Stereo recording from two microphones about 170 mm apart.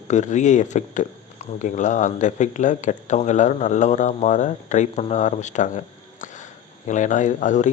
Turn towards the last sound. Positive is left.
turn(degrees=45)  # may be behind; listen again after turning